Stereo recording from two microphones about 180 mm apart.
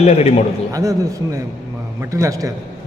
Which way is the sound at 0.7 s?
20° right (ahead or behind).